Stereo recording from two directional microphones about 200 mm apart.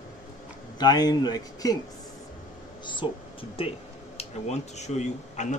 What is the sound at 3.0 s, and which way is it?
Speech, 25° left (ahead or behind).